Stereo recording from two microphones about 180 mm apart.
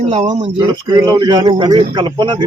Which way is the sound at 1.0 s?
20° right (ahead or behind).